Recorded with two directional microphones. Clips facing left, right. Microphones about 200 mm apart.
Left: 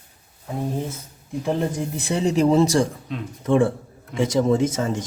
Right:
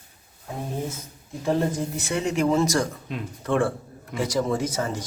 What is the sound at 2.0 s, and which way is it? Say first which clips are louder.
Speech: left 5 dB; 35° left (ahead or behind).